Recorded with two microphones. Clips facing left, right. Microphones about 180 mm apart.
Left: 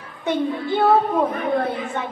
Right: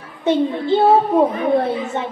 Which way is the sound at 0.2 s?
25° right (ahead or behind).